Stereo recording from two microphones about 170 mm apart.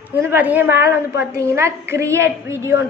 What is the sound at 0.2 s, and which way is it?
A woman's voice, 10° right (ahead or behind).